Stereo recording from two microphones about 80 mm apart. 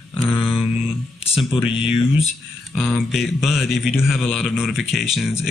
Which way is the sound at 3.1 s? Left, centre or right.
Centre.